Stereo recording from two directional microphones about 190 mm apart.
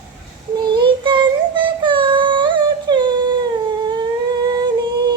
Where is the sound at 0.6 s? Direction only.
25° right (ahead or behind).